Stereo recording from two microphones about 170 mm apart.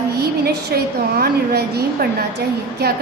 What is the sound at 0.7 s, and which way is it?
A woman's voice, 65° right (ahead or behind).